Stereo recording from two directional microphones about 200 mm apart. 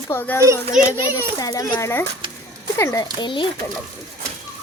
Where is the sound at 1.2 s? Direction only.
15° left (ahead or behind).